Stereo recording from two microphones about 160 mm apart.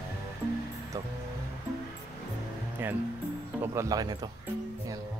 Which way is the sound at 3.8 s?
25° right (ahead or behind).